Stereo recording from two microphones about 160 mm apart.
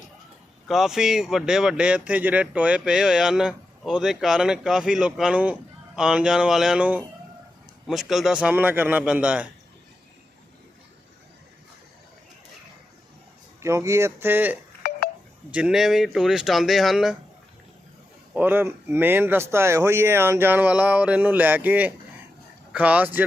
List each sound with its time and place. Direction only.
0.7 s speech: centre (ahead or behind)
13.6 s speech: 20° right (ahead or behind)
15.5 s speech: 5° right (ahead or behind)
18.3 s speech: 10° right (ahead or behind)